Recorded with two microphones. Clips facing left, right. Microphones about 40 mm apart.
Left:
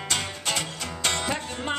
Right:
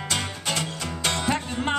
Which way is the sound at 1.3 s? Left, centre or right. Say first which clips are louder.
Right 4 dB; centre.